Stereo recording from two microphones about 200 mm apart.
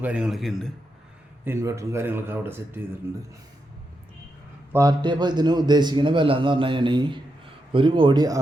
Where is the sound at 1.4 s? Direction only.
15° right (ahead or behind).